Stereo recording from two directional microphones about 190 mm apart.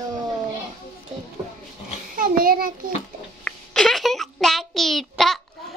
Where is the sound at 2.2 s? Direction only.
50° right (ahead or behind).